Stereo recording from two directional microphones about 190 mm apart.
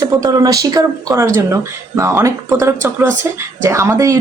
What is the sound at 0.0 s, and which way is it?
Speech, 20° right (ahead or behind).